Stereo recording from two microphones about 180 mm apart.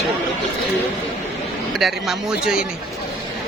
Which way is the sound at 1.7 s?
Centre (ahead or behind).